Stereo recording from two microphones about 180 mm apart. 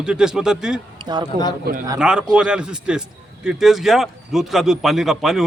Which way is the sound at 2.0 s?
5° right (ahead or behind).